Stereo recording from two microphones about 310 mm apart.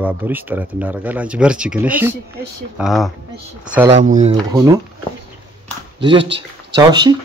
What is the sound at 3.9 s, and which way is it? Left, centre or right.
Speech, right.